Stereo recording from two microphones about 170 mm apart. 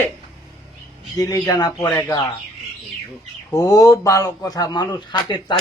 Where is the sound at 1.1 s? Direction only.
20° left (ahead or behind).